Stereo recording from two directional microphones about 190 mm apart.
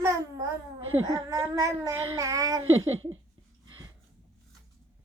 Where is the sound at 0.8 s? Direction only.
90° right.